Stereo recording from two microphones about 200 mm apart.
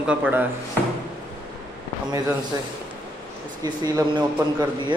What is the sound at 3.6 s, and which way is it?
Speech, 20° right (ahead or behind).